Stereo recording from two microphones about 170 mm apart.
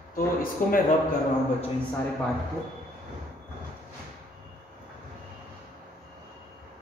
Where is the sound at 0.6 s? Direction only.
55° left (ahead or behind).